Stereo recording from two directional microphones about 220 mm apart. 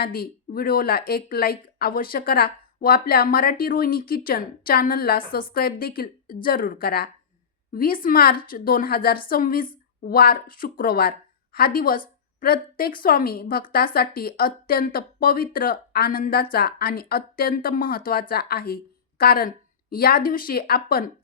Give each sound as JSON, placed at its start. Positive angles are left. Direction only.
{"t": 0.0, "sound": "a woman's voice", "side_deg": 40}